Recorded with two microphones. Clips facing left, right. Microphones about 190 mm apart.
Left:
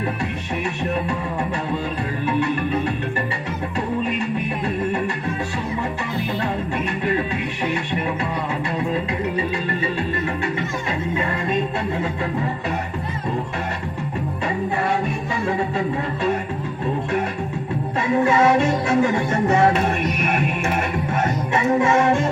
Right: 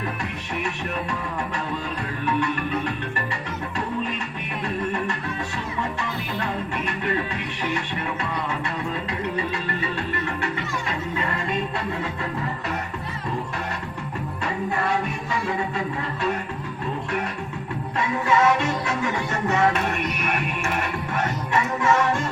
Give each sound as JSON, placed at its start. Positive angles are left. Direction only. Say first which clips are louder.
{"t": 18.3, "sound": "music", "louder": "left 2 dB", "side_deg": 30}
{"t": 20.2, "sound": "music", "louder": "left 5 dB", "side_deg": 25}